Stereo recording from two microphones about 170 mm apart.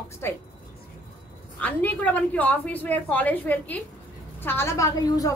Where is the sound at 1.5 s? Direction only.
10° left (ahead or behind).